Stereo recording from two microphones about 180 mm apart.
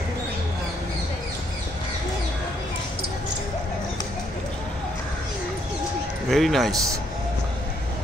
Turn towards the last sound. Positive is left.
turn(degrees=0)  # may be behind; listen again after turning